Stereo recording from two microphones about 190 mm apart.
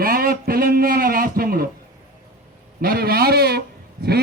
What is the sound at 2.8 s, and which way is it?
Speech, 50° right (ahead or behind).